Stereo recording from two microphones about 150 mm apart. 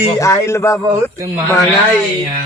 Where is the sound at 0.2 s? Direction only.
20° left (ahead or behind).